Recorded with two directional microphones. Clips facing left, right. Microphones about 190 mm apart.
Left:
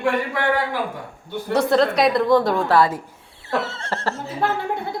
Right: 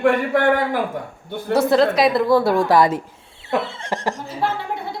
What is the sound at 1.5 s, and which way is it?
A woman's voice, 5° right (ahead or behind).